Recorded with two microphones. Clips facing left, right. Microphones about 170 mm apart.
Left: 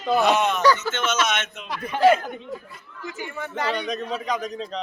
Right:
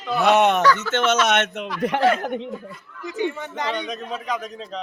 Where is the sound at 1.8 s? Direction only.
90° right.